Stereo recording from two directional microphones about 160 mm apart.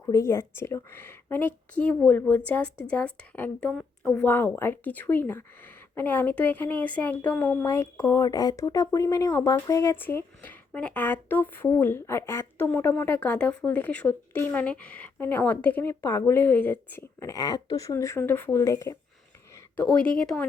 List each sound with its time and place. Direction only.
0.0 s a woman's voice: 15° left (ahead or behind)
19.7 s a woman's voice: 10° left (ahead or behind)